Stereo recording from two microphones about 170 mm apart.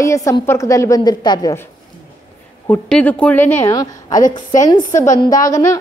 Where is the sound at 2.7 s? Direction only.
5° left (ahead or behind).